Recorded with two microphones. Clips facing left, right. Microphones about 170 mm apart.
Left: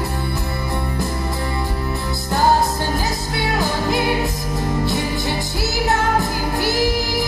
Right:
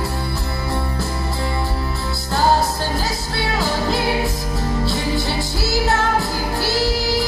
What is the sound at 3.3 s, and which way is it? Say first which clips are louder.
Music: even; 15° left (ahead or behind).